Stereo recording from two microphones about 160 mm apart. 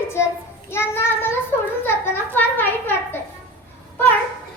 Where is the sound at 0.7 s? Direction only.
15° left (ahead or behind).